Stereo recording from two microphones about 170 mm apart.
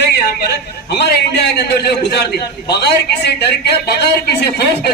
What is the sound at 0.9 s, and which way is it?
A man's voice, 75° left (ahead or behind).